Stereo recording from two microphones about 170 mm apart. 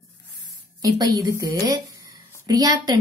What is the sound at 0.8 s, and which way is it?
A woman's voice, 20° right (ahead or behind).